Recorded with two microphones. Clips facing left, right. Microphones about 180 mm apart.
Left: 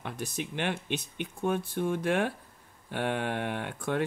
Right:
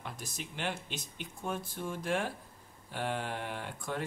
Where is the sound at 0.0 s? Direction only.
65° left (ahead or behind).